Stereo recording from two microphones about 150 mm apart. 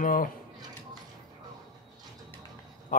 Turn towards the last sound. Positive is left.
turn(degrees=60)  # may be behind; listen again after turning